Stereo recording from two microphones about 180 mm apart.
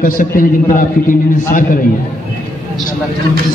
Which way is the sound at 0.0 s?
50° left (ahead or behind).